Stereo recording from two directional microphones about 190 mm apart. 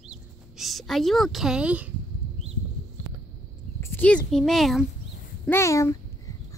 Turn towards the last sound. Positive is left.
turn(degrees=15)  # may be behind; listen again after turning